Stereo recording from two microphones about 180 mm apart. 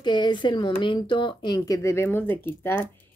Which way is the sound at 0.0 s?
25° left (ahead or behind).